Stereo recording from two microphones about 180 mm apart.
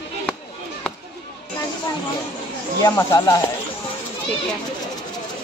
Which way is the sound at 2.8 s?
20° left (ahead or behind).